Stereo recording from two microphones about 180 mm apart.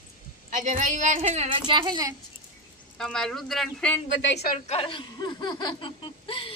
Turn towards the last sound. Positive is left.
turn(degrees=30)  # may be behind; listen again after turning